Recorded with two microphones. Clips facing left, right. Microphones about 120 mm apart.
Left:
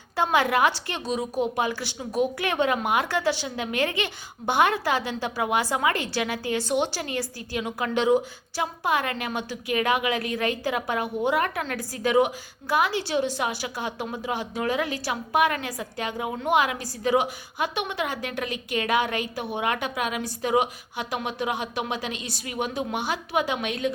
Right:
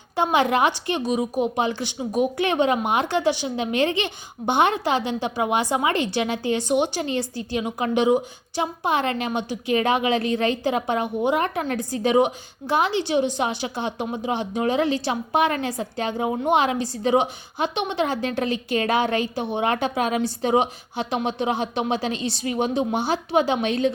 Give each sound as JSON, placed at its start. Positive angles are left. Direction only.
{"t": 0.2, "sound": "a woman's voice", "side_deg": -20}